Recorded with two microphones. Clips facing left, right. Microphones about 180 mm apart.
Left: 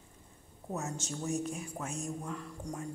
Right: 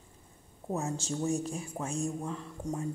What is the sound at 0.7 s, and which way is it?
Speech, 30° right (ahead or behind).